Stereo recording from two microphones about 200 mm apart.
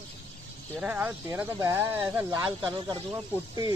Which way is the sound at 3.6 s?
30° left (ahead or behind).